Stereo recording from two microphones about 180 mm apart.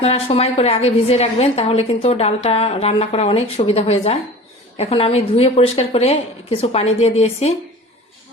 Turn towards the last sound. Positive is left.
turn(degrees=35)  # may be behind; listen again after turning